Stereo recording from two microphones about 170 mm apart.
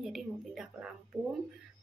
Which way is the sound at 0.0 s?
5° right (ahead or behind).